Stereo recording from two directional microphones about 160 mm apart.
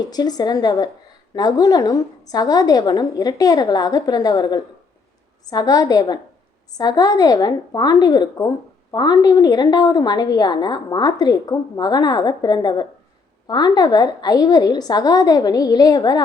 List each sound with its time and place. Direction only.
0.1 s a woman's voice: 25° left (ahead or behind)